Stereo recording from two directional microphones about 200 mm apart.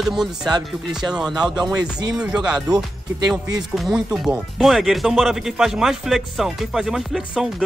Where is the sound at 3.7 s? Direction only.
Centre (ahead or behind).